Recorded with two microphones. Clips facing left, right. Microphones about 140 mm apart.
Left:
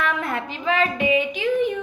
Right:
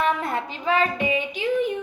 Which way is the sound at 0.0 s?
35° right (ahead or behind).